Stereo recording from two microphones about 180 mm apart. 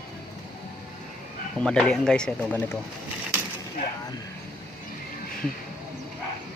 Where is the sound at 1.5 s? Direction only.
5° left (ahead or behind).